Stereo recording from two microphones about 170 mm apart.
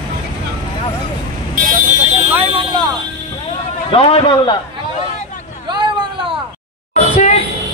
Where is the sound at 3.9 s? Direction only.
35° left (ahead or behind).